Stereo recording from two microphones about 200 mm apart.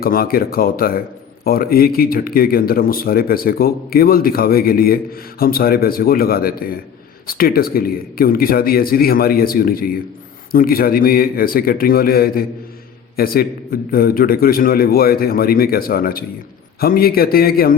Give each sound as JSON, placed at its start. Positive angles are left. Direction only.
{"t": 0.0, "sound": "speech", "side_deg": 45}